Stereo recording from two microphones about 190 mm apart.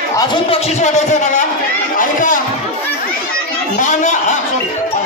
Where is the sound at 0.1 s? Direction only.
20° left (ahead or behind).